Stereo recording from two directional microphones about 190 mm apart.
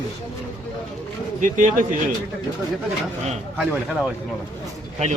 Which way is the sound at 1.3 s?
40° right (ahead or behind).